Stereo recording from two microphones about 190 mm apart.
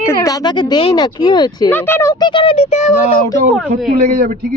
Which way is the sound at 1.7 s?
10° left (ahead or behind).